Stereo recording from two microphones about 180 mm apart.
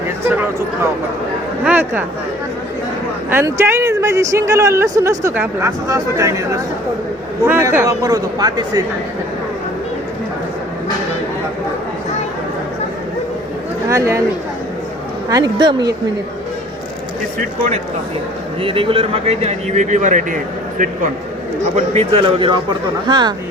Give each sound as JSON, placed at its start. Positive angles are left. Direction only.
{"t": 1.6, "sound": "a woman's voice", "side_deg": -10}
{"t": 3.2, "sound": "a woman's voice", "side_deg": -15}
{"t": 13.9, "sound": "a woman's voice", "side_deg": -15}
{"t": 15.3, "sound": "a man's voice", "side_deg": -25}
{"t": 18.6, "sound": "a man's voice", "side_deg": -30}
{"t": 21.8, "sound": "a man's voice", "side_deg": -35}